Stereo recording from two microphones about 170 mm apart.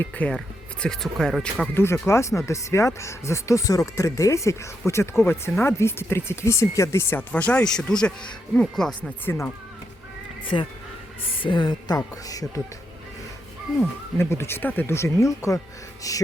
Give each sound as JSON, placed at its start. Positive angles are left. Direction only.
{"t": 0.0, "sound": "speech", "side_deg": 5}
{"t": 10.5, "sound": "speech", "side_deg": 30}
{"t": 14.2, "sound": "speech", "side_deg": 15}